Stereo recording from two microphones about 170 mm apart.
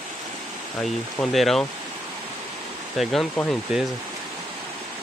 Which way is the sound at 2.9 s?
Centre (ahead or behind).